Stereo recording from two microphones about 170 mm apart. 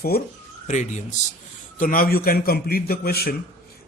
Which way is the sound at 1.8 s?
55° left (ahead or behind).